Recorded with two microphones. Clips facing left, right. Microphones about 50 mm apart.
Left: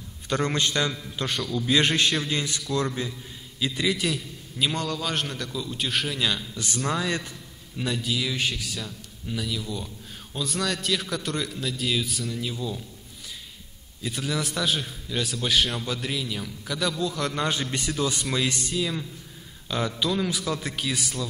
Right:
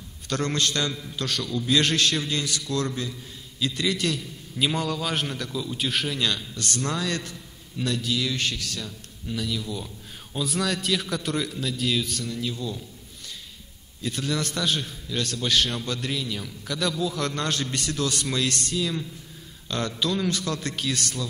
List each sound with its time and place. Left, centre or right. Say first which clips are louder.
0.3 s a man's voice: left 1 dB; centre
14.0 s a man's voice: right 1 dB; centre